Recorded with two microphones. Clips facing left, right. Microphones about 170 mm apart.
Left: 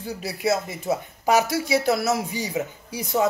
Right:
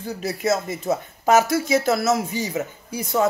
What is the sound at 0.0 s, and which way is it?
Speech, 10° left (ahead or behind).